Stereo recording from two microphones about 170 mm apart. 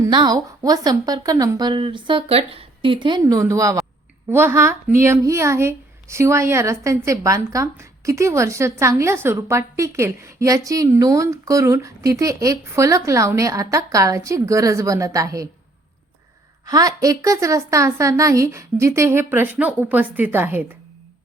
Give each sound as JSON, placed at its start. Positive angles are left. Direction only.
{"t": 0.0, "sound": "a woman's voice", "side_deg": -25}
{"t": 16.6, "sound": "speech", "side_deg": -20}